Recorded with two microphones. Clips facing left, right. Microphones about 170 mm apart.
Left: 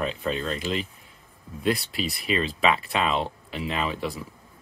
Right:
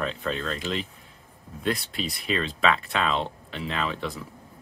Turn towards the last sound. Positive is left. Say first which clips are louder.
# left 1 dB
turn(degrees=5)  # may be behind; listen again after turning